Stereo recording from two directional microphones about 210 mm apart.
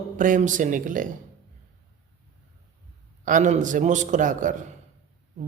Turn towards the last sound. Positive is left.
turn(degrees=-40)  # may be behind; listen again after turning